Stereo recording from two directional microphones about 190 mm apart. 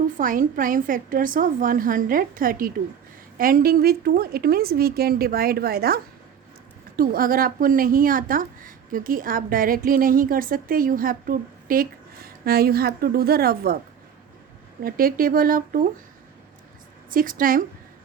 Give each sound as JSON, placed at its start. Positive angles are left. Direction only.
{"t": 0.2, "sound": "speech", "side_deg": -45}
{"t": 14.8, "sound": "speech", "side_deg": -50}
{"t": 17.1, "sound": "speech", "side_deg": -45}